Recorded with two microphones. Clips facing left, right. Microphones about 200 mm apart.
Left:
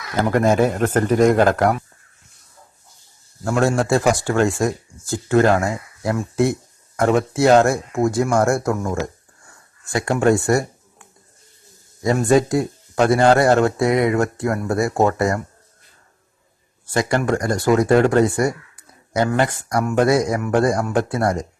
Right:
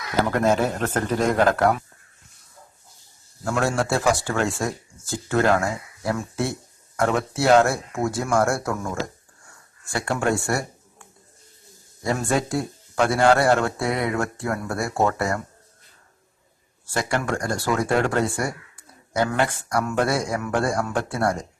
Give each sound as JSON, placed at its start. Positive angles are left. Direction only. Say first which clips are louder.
{"t": 0.2, "sound": "speech", "louder": "left 4 dB", "side_deg": 15}
{"t": 3.5, "sound": "speech", "louder": "left 5 dB", "side_deg": 15}
{"t": 12.5, "sound": "speech", "louder": "left 6 dB", "side_deg": 20}
{"t": 17.2, "sound": "speech", "louder": "left 7 dB", "side_deg": 20}